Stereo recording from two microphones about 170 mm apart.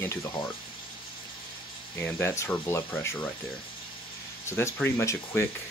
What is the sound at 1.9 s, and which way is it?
Speech, 15° left (ahead or behind).